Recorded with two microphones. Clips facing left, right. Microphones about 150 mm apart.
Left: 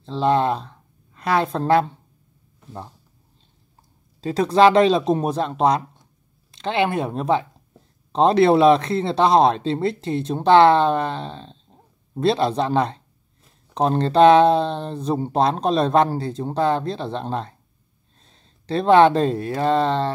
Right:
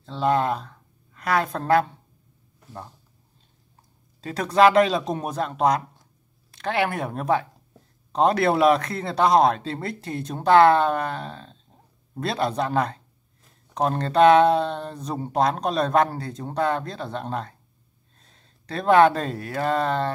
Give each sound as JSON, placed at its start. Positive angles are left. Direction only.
{"t": 0.0, "sound": "a woman's voice", "side_deg": 30}
{"t": 4.2, "sound": "speech", "side_deg": 30}